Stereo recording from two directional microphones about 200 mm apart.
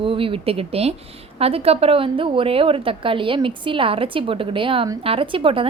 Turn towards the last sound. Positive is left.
turn(degrees=-25)  # may be behind; listen again after turning